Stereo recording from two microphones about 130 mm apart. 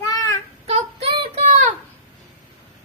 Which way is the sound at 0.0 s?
30° left (ahead or behind).